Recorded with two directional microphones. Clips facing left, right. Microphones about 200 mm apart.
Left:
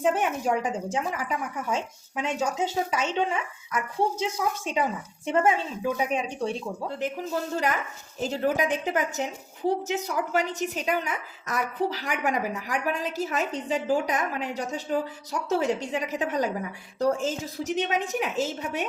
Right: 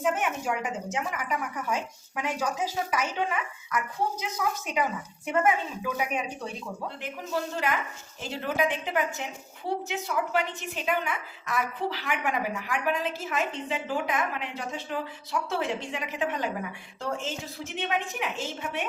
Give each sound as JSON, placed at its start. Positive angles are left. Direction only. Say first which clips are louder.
{"t": 0.0, "sound": "a woman's voice", "louder": "left 3 dB", "side_deg": 30}
{"t": 7.5, "sound": "a woman's voice", "louder": "left 2 dB", "side_deg": 40}